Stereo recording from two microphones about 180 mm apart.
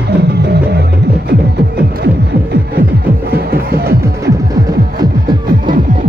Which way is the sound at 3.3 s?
60° right (ahead or behind).